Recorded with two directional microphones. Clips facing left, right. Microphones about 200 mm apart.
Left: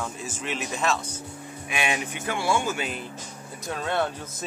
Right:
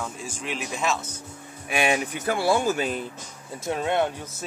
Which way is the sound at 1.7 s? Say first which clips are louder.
Right 5 dB; 45° right (ahead or behind).